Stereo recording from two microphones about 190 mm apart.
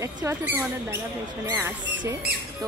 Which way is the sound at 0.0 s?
15° right (ahead or behind).